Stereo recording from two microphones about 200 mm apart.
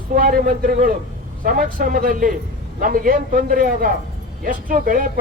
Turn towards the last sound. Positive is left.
turn(degrees=-45)  # may be behind; listen again after turning